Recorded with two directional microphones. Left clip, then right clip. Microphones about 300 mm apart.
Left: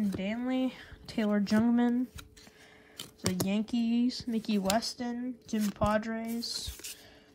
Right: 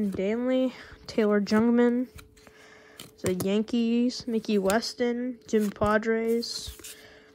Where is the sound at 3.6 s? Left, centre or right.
Right.